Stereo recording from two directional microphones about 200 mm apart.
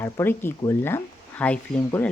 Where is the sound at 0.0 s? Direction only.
10° left (ahead or behind).